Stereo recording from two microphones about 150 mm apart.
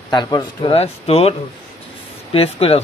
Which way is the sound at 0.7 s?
40° left (ahead or behind).